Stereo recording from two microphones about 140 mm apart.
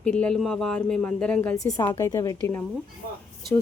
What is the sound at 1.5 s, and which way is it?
Speech, 25° left (ahead or behind).